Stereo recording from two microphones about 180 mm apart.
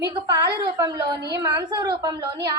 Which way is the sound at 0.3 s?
15° right (ahead or behind).